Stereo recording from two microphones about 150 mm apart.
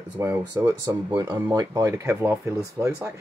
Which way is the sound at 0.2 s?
15° right (ahead or behind).